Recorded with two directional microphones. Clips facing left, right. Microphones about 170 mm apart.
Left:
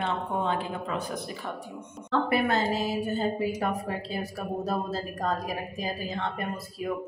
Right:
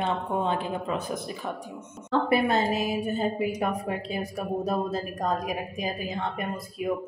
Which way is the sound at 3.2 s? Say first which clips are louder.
Right 1 dB; 20° right (ahead or behind).